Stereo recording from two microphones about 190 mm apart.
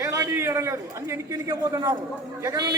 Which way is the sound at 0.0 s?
15° right (ahead or behind).